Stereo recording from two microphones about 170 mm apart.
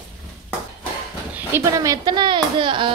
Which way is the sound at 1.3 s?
15° right (ahead or behind).